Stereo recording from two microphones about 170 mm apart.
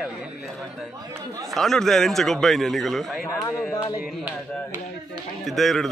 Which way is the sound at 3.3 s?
15° left (ahead or behind).